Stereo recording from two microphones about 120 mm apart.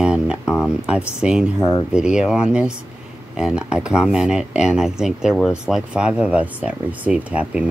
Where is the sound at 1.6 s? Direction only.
20° left (ahead or behind).